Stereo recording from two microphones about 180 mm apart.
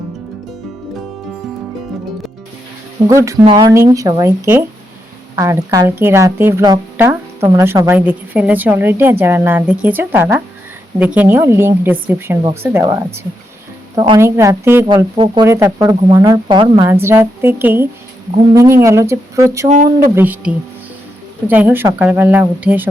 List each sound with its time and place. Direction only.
3.1 s a woman's voice: 15° right (ahead or behind)
14.8 s speech: 25° right (ahead or behind)
16.9 s a woman's voice: 15° right (ahead or behind)
19.6 s speech: 40° right (ahead or behind)
20.1 s a woman's voice: 10° right (ahead or behind)